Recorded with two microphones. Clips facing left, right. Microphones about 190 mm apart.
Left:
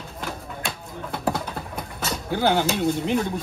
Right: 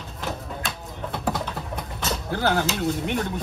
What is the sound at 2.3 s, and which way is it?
Speech, 15° left (ahead or behind).